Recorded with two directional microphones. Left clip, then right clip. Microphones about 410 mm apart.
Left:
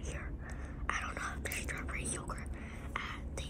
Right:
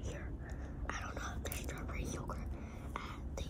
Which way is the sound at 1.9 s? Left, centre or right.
Right.